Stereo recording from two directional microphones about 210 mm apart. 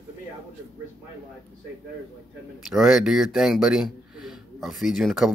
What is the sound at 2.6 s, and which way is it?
A man's voice, centre (ahead or behind).